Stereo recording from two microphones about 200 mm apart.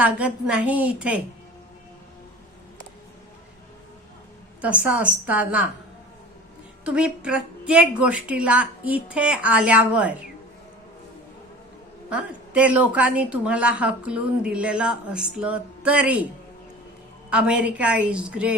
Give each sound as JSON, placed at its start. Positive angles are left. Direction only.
{"t": 0.0, "sound": "speech", "side_deg": -5}
{"t": 4.6, "sound": "a woman's voice", "side_deg": -5}
{"t": 6.8, "sound": "speech", "side_deg": -5}
{"t": 12.1, "sound": "speech", "side_deg": -5}
{"t": 17.2, "sound": "speech", "side_deg": -5}